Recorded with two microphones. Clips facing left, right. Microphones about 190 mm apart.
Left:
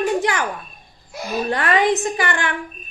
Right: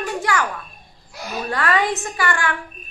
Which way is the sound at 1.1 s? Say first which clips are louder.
Left 4 dB; 20° left (ahead or behind).